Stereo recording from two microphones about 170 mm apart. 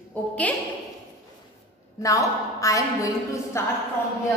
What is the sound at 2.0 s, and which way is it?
A woman's voice, 20° left (ahead or behind).